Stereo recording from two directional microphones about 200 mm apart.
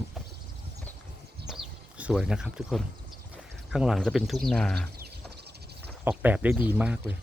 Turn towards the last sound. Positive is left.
turn(degrees=-5)  # may be behind; listen again after turning